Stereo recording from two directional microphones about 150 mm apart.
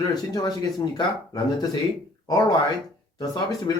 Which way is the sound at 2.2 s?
25° left (ahead or behind).